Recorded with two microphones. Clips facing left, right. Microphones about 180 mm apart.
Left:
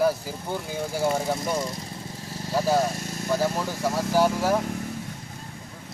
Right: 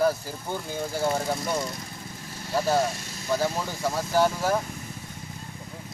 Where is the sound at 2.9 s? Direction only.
50° left (ahead or behind).